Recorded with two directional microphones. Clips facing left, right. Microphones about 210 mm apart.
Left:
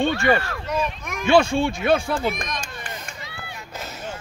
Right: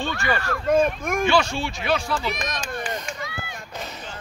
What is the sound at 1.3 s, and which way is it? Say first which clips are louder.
Speech: left 5 dB; 55° left (ahead or behind).